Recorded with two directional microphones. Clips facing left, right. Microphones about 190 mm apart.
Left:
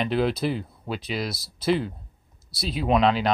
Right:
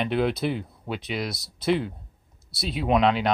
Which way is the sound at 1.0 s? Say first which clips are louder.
Left 1 dB; centre (ahead or behind).